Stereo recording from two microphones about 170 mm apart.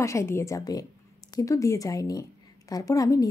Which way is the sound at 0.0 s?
15° left (ahead or behind).